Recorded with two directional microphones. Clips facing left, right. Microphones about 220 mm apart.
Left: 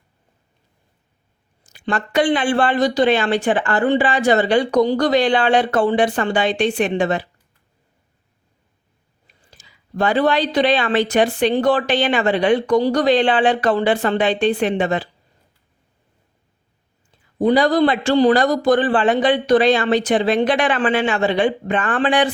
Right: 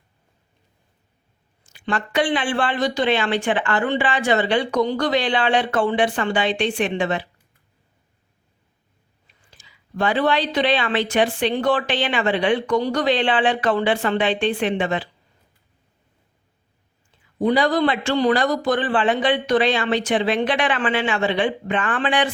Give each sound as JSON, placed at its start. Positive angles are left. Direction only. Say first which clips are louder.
{"t": 1.6, "sound": "speech", "louder": "left 2 dB", "side_deg": 40}
{"t": 9.2, "sound": "speech", "louder": "left 3 dB", "side_deg": 40}
{"t": 17.4, "sound": "speech", "louder": "left 4 dB", "side_deg": 35}